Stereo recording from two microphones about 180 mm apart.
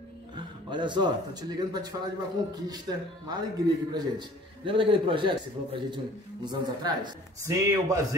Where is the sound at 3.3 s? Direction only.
20° right (ahead or behind).